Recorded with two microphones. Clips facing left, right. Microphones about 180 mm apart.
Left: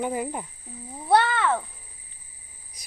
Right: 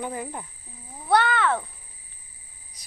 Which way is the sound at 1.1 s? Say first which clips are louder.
Even; 25° left (ahead or behind).